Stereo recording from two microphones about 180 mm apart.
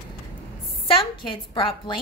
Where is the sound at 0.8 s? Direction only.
30° left (ahead or behind).